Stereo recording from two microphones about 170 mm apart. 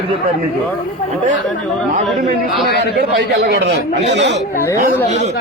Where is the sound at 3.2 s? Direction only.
75° right (ahead or behind); by 4.3 s 90° right.